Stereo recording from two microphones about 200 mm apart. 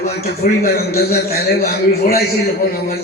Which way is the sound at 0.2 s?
50° left (ahead or behind).